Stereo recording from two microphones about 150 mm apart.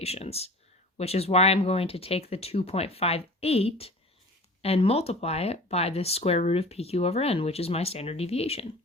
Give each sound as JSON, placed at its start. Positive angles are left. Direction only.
{"t": 0.0, "sound": "speech", "side_deg": 45}